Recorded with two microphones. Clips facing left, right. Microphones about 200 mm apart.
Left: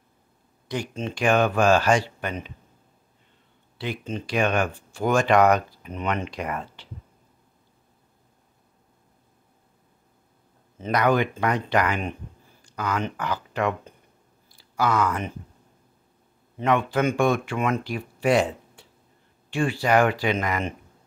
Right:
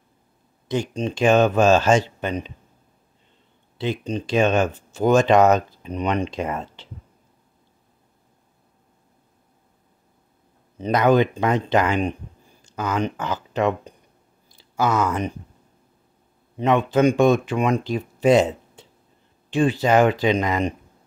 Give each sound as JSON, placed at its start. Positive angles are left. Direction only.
{"t": 0.7, "sound": "speech", "side_deg": -20}
{"t": 3.7, "sound": "speech", "side_deg": -25}
{"t": 10.8, "sound": "speech", "side_deg": -20}
{"t": 16.5, "sound": "speech", "side_deg": -20}